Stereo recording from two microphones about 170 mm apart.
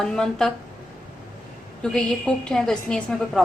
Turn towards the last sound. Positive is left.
turn(degrees=5)  # may be behind; listen again after turning